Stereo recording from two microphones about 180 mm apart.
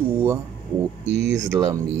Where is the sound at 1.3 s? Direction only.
20° right (ahead or behind).